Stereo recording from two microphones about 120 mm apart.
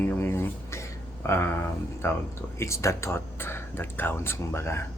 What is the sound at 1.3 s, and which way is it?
Speech, 20° left (ahead or behind).